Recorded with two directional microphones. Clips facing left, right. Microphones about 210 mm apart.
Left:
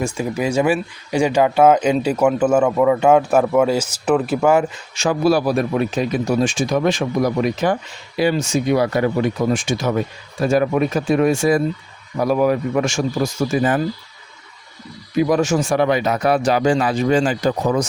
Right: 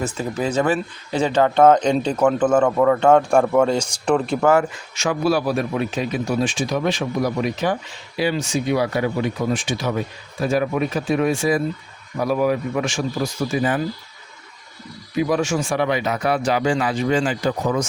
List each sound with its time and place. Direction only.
0.0 s speech: 10° left (ahead or behind)
4.9 s a man's voice: 35° left (ahead or behind)
15.3 s speech: 40° left (ahead or behind)